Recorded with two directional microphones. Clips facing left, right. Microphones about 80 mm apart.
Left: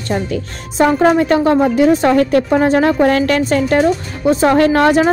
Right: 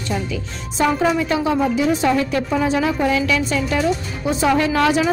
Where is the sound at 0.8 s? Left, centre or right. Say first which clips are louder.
Left 6 dB; left.